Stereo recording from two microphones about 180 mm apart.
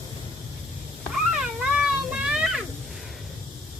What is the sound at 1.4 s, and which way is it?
Cat, 5° right (ahead or behind).